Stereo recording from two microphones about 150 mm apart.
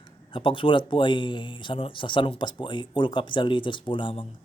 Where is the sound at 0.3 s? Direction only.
35° left (ahead or behind).